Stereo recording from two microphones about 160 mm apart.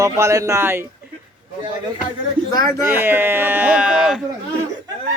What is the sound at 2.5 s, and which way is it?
Speech, 20° left (ahead or behind).